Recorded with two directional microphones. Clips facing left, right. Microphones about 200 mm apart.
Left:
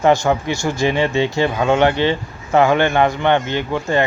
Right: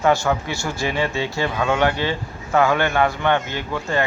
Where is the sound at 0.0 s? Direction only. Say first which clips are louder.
Left 4 dB; 20° left (ahead or behind).